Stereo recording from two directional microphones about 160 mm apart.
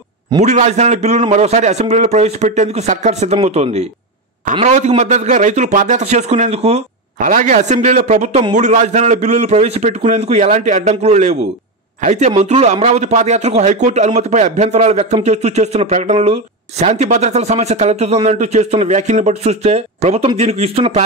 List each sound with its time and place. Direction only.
0.4 s a man's voice: 45° right (ahead or behind)